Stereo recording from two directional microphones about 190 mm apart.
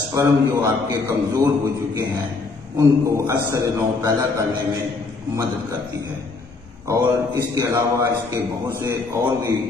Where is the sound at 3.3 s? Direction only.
15° right (ahead or behind).